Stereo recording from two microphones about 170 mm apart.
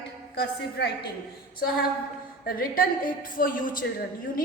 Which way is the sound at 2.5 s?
60° left (ahead or behind).